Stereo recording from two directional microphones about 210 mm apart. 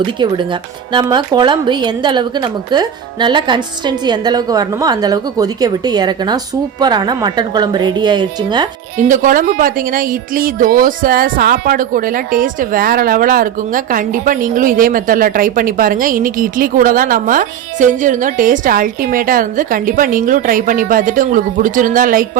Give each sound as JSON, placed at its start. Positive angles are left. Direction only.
{"t": 0.0, "sound": "a woman's voice", "side_deg": -20}
{"t": 9.0, "sound": "a woman's voice", "side_deg": -40}